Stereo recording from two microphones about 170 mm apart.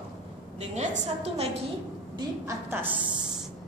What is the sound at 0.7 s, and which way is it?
Speech, 40° right (ahead or behind).